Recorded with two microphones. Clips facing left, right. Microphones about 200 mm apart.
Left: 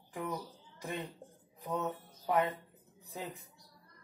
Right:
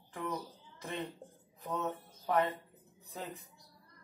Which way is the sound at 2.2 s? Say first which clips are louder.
Even; 15° left (ahead or behind).